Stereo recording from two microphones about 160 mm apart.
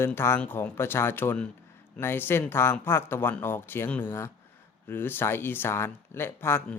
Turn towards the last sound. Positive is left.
turn(degrees=15)  # may be behind; listen again after turning